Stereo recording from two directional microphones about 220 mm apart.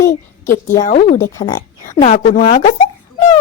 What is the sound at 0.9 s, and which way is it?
Speech, 30° left (ahead or behind).